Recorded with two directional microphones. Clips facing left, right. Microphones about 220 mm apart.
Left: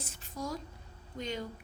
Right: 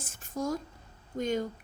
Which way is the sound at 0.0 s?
50° right (ahead or behind).